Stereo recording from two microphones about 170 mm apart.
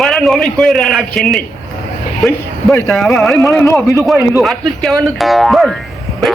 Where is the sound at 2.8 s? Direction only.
Centre (ahead or behind).